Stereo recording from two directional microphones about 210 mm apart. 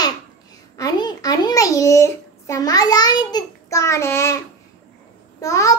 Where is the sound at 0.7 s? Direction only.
20° left (ahead or behind).